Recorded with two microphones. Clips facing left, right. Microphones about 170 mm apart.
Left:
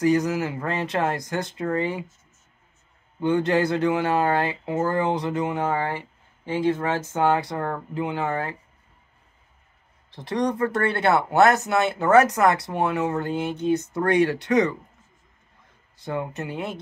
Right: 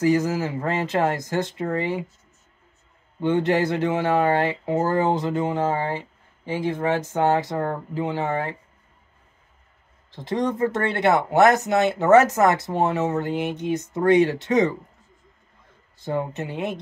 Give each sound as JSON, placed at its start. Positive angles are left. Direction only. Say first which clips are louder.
{"t": 0.0, "sound": "speech", "louder": "even", "side_deg": -30}
{"t": 3.3, "sound": "speech", "louder": "even", "side_deg": -20}
{"t": 10.2, "sound": "speech", "louder": "right 1 dB", "side_deg": -20}
{"t": 16.3, "sound": "speech", "louder": "right 2 dB", "side_deg": -20}